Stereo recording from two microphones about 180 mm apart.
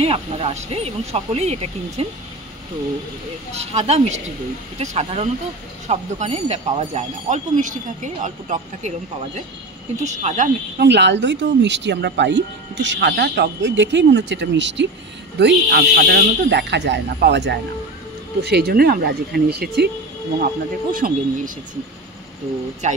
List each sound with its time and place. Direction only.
0.0 s speech: 30° right (ahead or behind)
3.5 s speech: 35° right (ahead or behind)
10.8 s speech: 70° right (ahead or behind)
15.3 s speech: 65° right (ahead or behind)
22.8 s speech: 40° right (ahead or behind)